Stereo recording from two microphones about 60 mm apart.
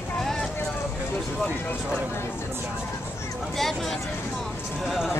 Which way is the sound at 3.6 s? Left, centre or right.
Centre.